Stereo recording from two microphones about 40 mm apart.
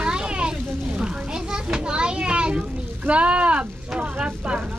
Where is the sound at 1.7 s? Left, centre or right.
Right.